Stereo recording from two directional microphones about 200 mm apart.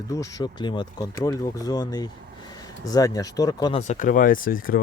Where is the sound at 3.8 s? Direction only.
40° left (ahead or behind).